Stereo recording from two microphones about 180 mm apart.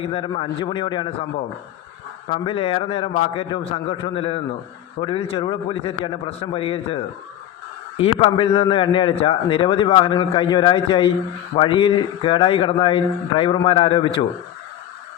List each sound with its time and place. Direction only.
0.0 s a man's voice: 30° left (ahead or behind)
2.3 s a man's voice: 30° left (ahead or behind)